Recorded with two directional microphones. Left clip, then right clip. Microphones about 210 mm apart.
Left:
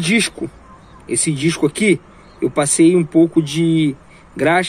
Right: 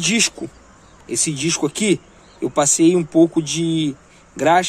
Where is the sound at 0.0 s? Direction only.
Centre (ahead or behind).